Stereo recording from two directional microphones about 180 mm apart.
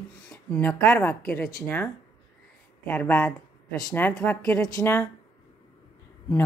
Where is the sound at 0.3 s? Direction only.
10° left (ahead or behind).